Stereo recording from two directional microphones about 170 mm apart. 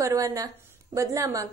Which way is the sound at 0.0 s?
20° right (ahead or behind).